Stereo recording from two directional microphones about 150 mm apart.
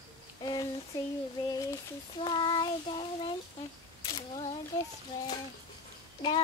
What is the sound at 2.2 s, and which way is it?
Child singing, 35° left (ahead or behind).